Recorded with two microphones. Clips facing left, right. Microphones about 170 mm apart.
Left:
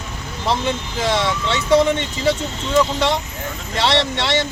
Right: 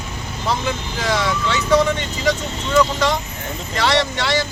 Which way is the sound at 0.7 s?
25° left (ahead or behind).